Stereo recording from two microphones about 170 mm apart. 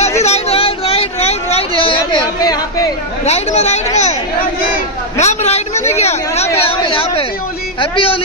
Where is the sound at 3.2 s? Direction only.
40° left (ahead or behind).